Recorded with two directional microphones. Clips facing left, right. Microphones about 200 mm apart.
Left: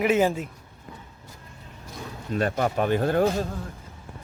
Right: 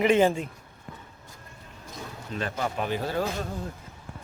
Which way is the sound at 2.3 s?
45° left (ahead or behind).